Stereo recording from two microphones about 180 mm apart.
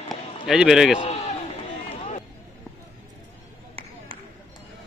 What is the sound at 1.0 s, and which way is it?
Run, 40° left (ahead or behind).